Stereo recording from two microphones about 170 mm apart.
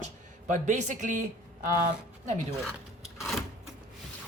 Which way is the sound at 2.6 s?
Centre (ahead or behind).